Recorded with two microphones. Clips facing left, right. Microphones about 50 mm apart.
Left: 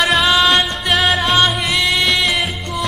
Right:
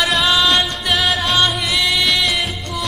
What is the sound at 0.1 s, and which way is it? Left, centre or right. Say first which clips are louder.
Music: left 2 dB; centre.